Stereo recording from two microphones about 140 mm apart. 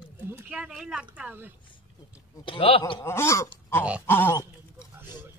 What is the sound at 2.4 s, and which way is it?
Speech, 40° left (ahead or behind).